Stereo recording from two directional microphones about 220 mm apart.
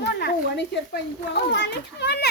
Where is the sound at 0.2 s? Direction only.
50° left (ahead or behind).